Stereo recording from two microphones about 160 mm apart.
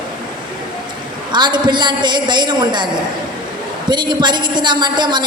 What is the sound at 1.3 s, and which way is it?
A woman's voice, 30° right (ahead or behind).